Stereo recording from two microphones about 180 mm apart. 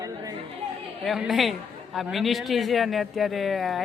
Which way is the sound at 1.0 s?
Centre (ahead or behind).